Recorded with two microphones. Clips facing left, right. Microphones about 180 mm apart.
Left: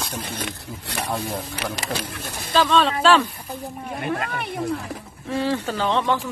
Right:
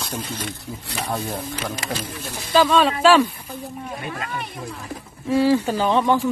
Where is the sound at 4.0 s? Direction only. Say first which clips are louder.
Left 7 dB; 55° left (ahead or behind).